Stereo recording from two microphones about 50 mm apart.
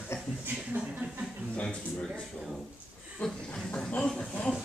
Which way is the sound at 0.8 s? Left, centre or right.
Right.